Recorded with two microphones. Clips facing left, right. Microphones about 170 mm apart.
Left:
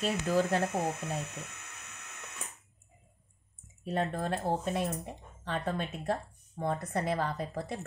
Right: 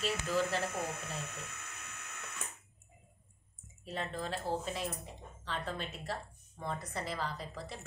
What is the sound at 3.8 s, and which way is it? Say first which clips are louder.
Speech: left 7 dB; 55° left (ahead or behind).